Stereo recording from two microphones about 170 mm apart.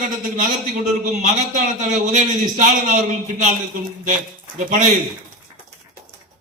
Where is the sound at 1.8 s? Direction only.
45° right (ahead or behind).